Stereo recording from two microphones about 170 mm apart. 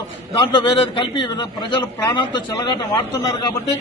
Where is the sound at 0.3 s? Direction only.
30° left (ahead or behind).